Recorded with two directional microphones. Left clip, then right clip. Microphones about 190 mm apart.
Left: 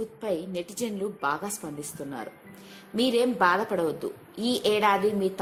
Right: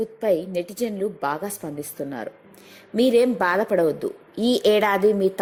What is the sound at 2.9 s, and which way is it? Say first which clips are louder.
A woman's voice: right 6 dB; 25° right (ahead or behind).